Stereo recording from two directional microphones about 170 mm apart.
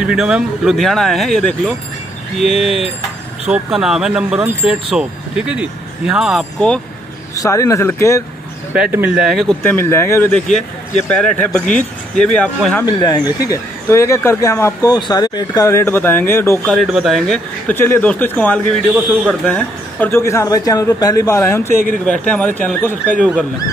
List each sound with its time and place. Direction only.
0.0 s speech: 5° right (ahead or behind)
3.4 s speech: 5° right (ahead or behind)
7.3 s speech: 20° left (ahead or behind)
8.7 s speech: 10° right (ahead or behind)
9.6 s speech: 15° left (ahead or behind)
12.4 s speech: 5° left (ahead or behind)
12.8 s speech: 25° left (ahead or behind)
16.6 s speech: centre (ahead or behind)